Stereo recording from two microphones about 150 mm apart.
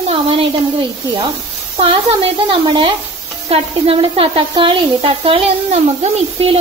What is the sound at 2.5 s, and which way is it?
Speech, 30° right (ahead or behind).